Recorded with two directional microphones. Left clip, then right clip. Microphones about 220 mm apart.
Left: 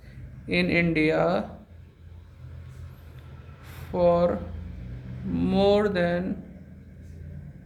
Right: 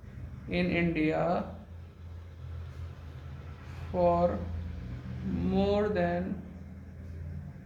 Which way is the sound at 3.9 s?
50° left (ahead or behind).